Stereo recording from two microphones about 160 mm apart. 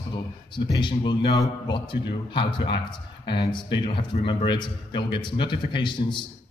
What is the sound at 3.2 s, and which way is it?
A man's voice, 30° left (ahead or behind).